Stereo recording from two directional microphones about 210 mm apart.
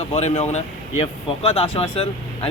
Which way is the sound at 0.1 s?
30° left (ahead or behind).